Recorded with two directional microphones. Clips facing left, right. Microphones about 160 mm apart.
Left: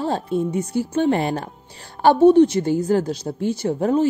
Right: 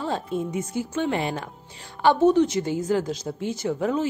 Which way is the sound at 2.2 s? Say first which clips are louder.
Left 8 dB; 60° left (ahead or behind).